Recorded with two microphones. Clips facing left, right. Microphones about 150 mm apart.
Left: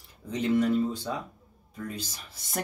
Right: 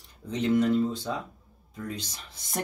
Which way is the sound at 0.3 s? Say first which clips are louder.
Right 1 dB; 10° left (ahead or behind).